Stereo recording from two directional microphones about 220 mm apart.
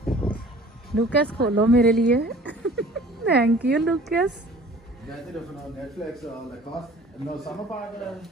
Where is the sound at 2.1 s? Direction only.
45° right (ahead or behind).